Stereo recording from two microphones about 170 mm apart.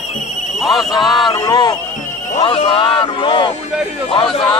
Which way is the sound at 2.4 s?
35° left (ahead or behind).